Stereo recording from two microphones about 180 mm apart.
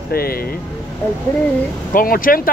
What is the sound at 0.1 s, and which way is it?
Speech, 55° left (ahead or behind).